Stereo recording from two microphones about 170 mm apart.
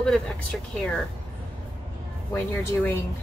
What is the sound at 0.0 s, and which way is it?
Speech, 5° left (ahead or behind).